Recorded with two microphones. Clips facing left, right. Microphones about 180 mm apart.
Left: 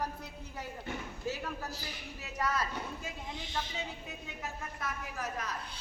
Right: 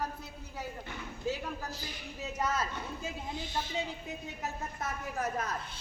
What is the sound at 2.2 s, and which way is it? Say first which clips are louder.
Speech: right 1 dB; 20° right (ahead or behind).